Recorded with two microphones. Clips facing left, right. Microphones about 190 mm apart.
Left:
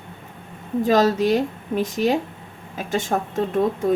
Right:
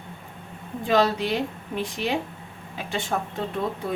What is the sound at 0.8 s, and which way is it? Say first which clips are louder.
Speech: left 4 dB; 40° left (ahead or behind).